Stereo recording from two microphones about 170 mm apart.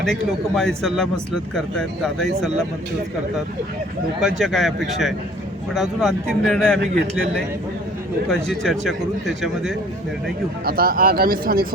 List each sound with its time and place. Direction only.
0.0 s speech: centre (ahead or behind)
4.2 s speech: centre (ahead or behind)
8.3 s speech: centre (ahead or behind)
10.7 s speech: 60° right (ahead or behind)